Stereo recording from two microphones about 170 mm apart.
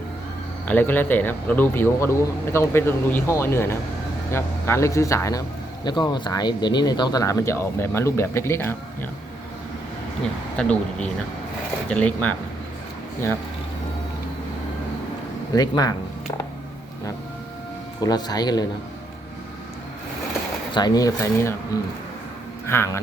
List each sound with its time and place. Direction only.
0.7 s speech: 10° left (ahead or behind)
10.6 s speech: 5° left (ahead or behind)
15.5 s speech: 25° left (ahead or behind)
18.0 s speech: 25° left (ahead or behind)
20.7 s speech: 25° left (ahead or behind)